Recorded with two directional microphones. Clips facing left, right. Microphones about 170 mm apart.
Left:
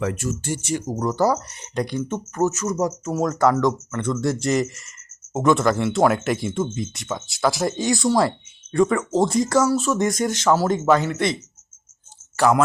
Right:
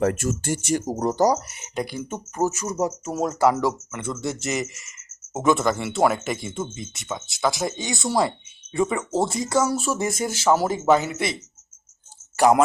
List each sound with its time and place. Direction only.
0.0 s speech: 50° right (ahead or behind)
1.1 s speech: 15° right (ahead or behind)
12.4 s speech: 15° right (ahead or behind)